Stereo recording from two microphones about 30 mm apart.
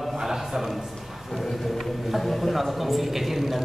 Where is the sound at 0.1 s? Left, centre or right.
Centre.